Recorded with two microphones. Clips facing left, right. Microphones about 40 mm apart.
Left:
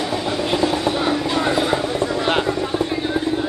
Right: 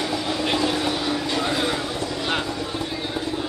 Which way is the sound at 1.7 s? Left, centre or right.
Left.